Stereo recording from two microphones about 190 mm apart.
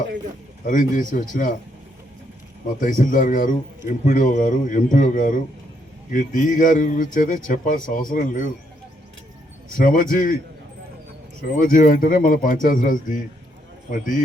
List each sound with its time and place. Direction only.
0.7 s a man's voice: 45° left (ahead or behind)
2.8 s a man's voice: 45° left (ahead or behind)
9.7 s a man's voice: 45° left (ahead or behind)
11.6 s a man's voice: 45° left (ahead or behind)